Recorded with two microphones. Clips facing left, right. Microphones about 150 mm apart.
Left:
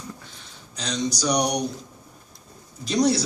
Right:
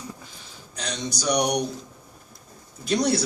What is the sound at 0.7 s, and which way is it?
Speech, 55° right (ahead or behind).